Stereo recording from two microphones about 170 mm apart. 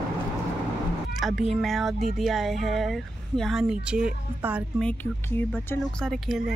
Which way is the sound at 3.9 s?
5° right (ahead or behind).